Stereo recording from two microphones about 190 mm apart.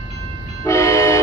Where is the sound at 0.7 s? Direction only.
15° left (ahead or behind).